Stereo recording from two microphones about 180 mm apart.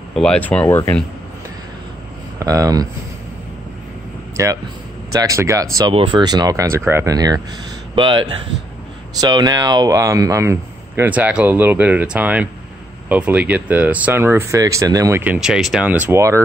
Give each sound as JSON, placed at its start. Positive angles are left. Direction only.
{"t": 0.1, "sound": "speech", "side_deg": 5}
{"t": 2.3, "sound": "speech", "side_deg": -20}
{"t": 4.4, "sound": "speech", "side_deg": -15}